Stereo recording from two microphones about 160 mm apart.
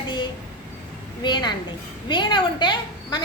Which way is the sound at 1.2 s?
30° left (ahead or behind).